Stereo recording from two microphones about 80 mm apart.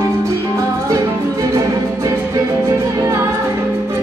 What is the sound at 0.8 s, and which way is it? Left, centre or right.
Music, right.